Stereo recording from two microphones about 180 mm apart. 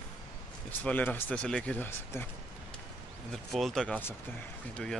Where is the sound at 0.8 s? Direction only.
10° left (ahead or behind).